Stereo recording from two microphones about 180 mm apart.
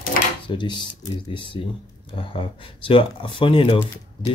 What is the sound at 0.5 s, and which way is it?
Speech, 25° left (ahead or behind).